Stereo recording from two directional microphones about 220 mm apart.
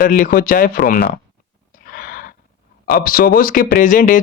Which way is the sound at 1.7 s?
40° left (ahead or behind).